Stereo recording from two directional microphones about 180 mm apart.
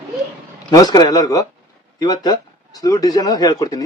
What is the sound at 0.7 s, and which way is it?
A man's voice, 20° left (ahead or behind).